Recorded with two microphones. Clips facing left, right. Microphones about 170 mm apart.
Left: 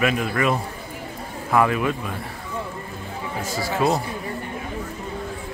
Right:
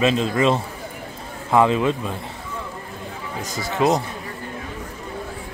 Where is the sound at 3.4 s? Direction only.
20° right (ahead or behind).